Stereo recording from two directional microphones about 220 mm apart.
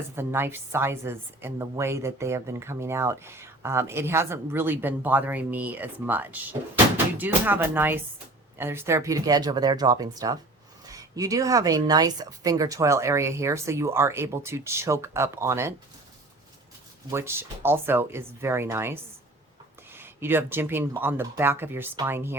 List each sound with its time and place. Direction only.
0.2 s a woman's voice: 10° right (ahead or behind)
17.1 s a woman's voice: 10° right (ahead or behind)
20.0 s a woman's voice: 10° right (ahead or behind)